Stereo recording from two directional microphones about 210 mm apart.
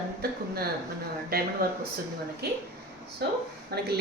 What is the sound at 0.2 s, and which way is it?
A woman's voice, 45° right (ahead or behind).